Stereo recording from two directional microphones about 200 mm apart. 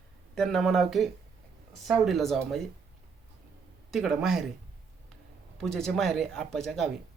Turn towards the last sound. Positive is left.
turn(degrees=0)  # may be behind; listen again after turning